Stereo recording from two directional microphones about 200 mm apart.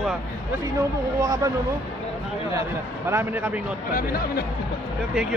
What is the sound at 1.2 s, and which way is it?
Speech, 20° right (ahead or behind).